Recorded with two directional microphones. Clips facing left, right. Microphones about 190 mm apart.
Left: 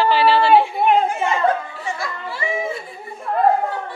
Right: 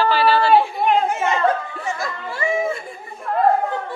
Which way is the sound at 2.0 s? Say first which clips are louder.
Right 2 dB; 50° right (ahead or behind).